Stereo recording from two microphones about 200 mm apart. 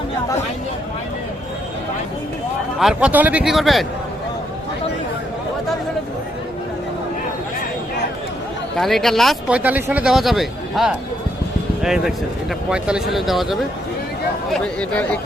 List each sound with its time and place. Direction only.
2.7 s speech: 5° right (ahead or behind)
8.7 s speech: centre (ahead or behind)